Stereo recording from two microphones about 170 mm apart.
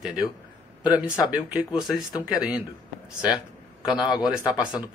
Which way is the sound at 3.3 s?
5° right (ahead or behind).